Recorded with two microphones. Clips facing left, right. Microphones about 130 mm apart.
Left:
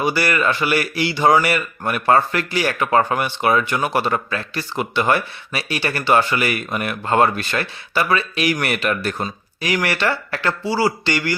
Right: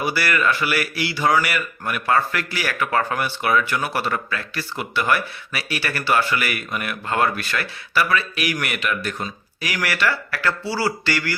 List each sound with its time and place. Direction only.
0.0 s speech: 25° left (ahead or behind)
8.6 s speech: 40° left (ahead or behind)
10.6 s speech: 15° left (ahead or behind)